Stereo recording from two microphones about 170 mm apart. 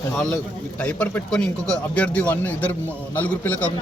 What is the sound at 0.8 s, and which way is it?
A man's voice, 10° left (ahead or behind).